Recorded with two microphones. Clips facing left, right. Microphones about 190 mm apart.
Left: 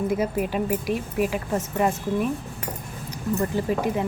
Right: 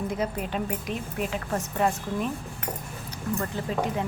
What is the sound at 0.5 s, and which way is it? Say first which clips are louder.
A woman's voice: left 6 dB; 10° left (ahead or behind).